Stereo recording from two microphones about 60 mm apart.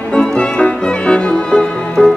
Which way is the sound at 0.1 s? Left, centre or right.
Centre.